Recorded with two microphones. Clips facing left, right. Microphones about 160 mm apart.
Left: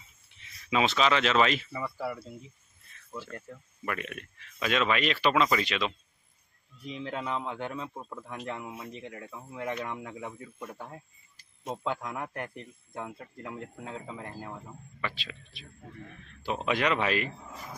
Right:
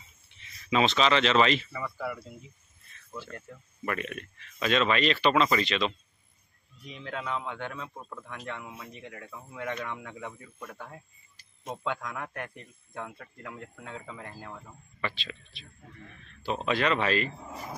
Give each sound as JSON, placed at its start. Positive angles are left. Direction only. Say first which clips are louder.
{"t": 0.7, "sound": "speech", "louder": "right 1 dB", "side_deg": 5}
{"t": 3.8, "sound": "speech", "louder": "right 2 dB", "side_deg": 5}
{"t": 6.9, "sound": "speech", "louder": "left 1 dB", "side_deg": 30}
{"t": 7.9, "sound": "speech", "louder": "left 2 dB", "side_deg": 10}
{"t": 8.3, "sound": "speech", "louder": "left 3 dB", "side_deg": 30}
{"t": 9.2, "sound": "speech", "louder": "even", "side_deg": 15}
{"t": 10.6, "sound": "speech", "louder": "even", "side_deg": 25}
{"t": 15.0, "sound": "speech", "louder": "right 2 dB", "side_deg": 5}